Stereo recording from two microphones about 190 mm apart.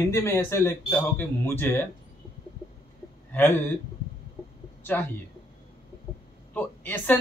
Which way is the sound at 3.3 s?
10° left (ahead or behind).